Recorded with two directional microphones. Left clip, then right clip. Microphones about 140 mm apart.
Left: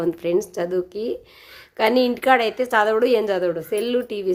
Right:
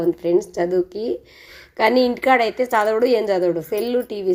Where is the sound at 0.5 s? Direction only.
5° left (ahead or behind).